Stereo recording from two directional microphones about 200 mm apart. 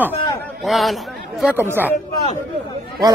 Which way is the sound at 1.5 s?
10° right (ahead or behind).